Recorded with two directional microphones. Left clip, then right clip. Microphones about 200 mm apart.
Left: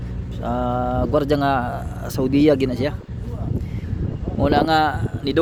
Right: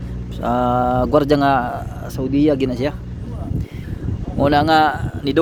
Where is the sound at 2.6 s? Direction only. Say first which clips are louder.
Right 2 dB; 5° right (ahead or behind).